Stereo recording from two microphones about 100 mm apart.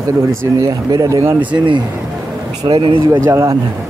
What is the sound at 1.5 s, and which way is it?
Speech, 50° right (ahead or behind).